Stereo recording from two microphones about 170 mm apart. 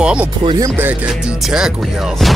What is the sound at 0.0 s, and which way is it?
Speech, 5° right (ahead or behind).